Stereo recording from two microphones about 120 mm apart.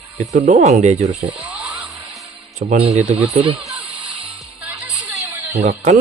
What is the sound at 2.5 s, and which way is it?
Speech, 65° right (ahead or behind).